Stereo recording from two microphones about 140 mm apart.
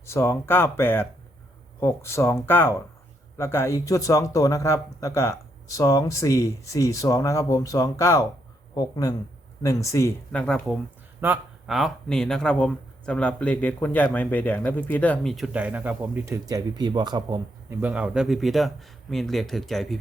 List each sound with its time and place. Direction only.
0.0 s speech: 20° left (ahead or behind)
10.4 s a man's voice: 5° left (ahead or behind)
15.5 s speech: 10° right (ahead or behind); by 17.7 s 30° right (ahead or behind)
17.7 s a man's voice: 10° right (ahead or behind)